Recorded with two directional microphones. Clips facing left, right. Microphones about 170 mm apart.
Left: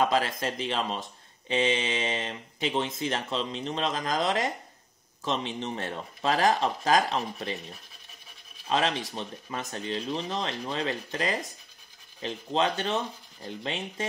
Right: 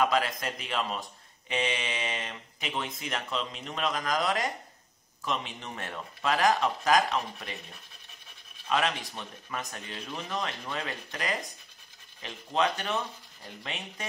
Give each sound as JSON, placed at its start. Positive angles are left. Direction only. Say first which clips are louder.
{"t": 0.0, "sound": "speech", "louder": "left 1 dB", "side_deg": 30}
{"t": 8.6, "sound": "speech", "louder": "left 2 dB", "side_deg": 30}